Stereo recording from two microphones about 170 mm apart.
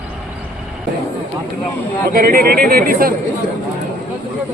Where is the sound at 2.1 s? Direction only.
60° right (ahead or behind).